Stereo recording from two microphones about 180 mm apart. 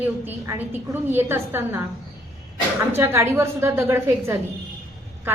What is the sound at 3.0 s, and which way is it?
A woman's voice, 15° right (ahead or behind).